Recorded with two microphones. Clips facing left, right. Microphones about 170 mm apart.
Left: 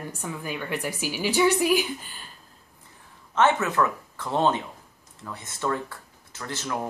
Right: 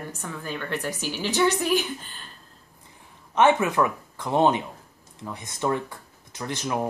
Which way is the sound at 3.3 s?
15° right (ahead or behind).